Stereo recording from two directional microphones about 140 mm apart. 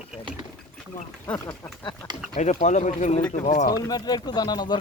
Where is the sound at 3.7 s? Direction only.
30° left (ahead or behind).